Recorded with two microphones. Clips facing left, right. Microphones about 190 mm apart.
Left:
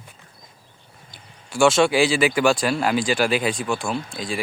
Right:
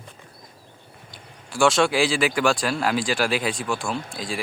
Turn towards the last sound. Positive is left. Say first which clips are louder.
# left 2 dB
turn(degrees=0)  # may be behind; listen again after turning